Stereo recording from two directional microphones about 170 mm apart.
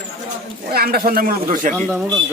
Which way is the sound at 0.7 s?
65° right (ahead or behind).